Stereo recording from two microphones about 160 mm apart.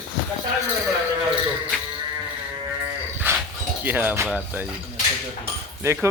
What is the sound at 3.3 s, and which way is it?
Dog, 10° right (ahead or behind).